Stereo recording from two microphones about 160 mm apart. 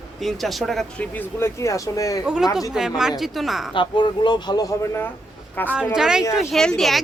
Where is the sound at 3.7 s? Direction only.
30° left (ahead or behind); by 5.7 s 10° left (ahead or behind).